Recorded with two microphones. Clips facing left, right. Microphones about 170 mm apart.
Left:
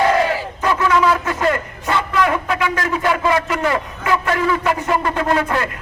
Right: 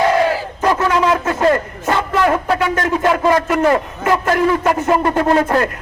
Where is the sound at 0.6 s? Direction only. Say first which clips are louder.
Right 1 dB; 40° right (ahead or behind).